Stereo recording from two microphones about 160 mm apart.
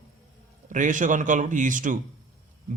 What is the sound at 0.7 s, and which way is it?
Speech, 50° right (ahead or behind).